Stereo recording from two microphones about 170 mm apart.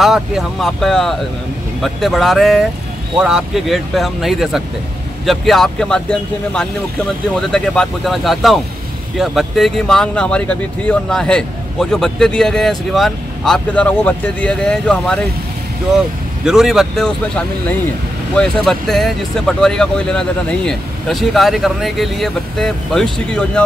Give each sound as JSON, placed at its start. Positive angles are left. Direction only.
{"t": 0.0, "sound": "speech", "side_deg": 0}
{"t": 7.3, "sound": "speech", "side_deg": 5}
{"t": 16.4, "sound": "speech", "side_deg": 0}